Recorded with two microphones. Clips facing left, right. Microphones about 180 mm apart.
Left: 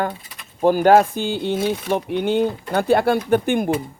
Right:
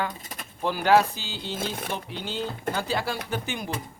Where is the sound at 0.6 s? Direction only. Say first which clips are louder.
Left 7 dB; 45° left (ahead or behind).